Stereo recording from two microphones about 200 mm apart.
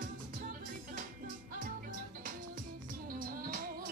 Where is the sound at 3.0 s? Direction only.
45° right (ahead or behind).